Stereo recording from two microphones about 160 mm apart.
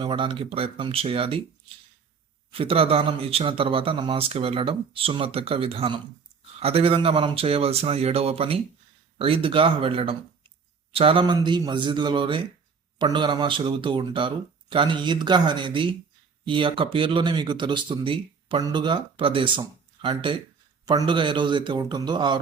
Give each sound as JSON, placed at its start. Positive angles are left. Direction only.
{"t": 0.0, "sound": "speech", "side_deg": -30}
{"t": 2.5, "sound": "speech", "side_deg": -35}